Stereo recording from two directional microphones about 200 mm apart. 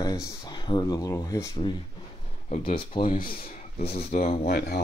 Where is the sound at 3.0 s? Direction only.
45° left (ahead or behind).